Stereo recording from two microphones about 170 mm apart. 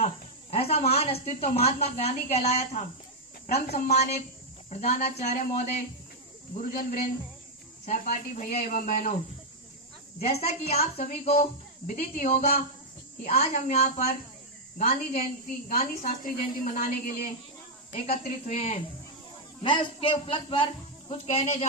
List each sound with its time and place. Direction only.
0.5 s a woman's voice: 35° left (ahead or behind)
10.2 s a woman's voice: 40° left (ahead or behind)
11.9 s speech: 50° left (ahead or behind)
13.2 s a woman's voice: 40° left (ahead or behind); by 15.9 s 55° left (ahead or behind)
16.0 s a woman's voice: 45° left (ahead or behind)
17.9 s a woman's voice: 40° left (ahead or behind)
19.6 s a woman's voice: 30° left (ahead or behind)